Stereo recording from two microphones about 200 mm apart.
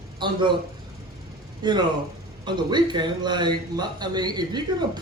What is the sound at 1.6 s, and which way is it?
A man's voice, 20° right (ahead or behind).